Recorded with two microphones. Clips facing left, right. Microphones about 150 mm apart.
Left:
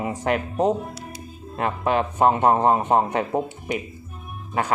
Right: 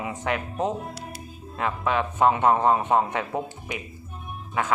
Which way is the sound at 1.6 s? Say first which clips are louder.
Left 3 dB; 45° left (ahead or behind).